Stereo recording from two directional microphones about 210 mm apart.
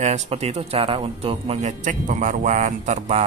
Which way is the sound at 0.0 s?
30° right (ahead or behind).